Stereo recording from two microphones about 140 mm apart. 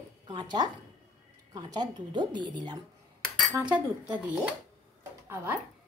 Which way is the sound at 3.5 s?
10° right (ahead or behind).